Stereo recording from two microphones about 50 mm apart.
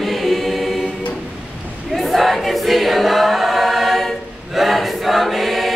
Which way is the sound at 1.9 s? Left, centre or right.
Centre.